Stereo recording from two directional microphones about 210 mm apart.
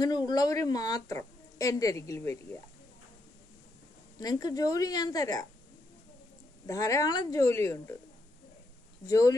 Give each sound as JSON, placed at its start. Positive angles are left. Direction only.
{"t": 0.0, "sound": "a woman's voice", "side_deg": 20}
{"t": 4.2, "sound": "a woman's voice", "side_deg": 20}
{"t": 6.6, "sound": "a woman's voice", "side_deg": 15}
{"t": 9.0, "sound": "a woman's voice", "side_deg": 15}